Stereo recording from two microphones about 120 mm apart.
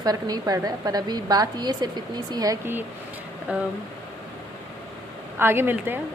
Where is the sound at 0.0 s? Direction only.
35° right (ahead or behind).